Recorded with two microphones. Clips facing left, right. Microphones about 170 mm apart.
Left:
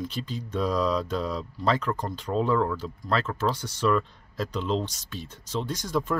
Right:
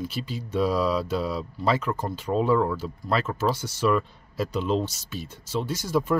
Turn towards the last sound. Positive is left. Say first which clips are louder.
# right 3 dB
turn(degrees=-10)  # may be behind; listen again after turning